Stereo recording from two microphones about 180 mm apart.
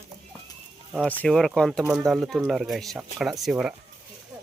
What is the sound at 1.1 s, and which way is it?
Speech, 5° left (ahead or behind).